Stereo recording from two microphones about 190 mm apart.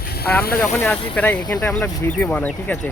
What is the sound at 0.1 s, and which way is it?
Speech, 55° left (ahead or behind).